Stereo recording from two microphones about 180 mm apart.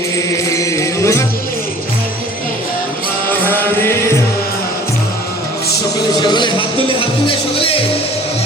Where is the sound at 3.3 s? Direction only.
10° left (ahead or behind).